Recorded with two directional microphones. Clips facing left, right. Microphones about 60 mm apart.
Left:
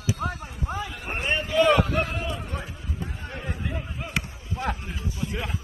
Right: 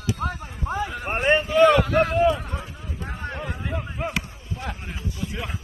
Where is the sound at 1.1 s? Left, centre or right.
Right.